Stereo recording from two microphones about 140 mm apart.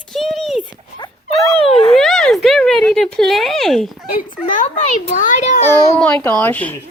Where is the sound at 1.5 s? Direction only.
45° left (ahead or behind).